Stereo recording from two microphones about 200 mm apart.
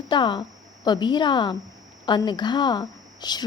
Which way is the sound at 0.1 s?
25° left (ahead or behind).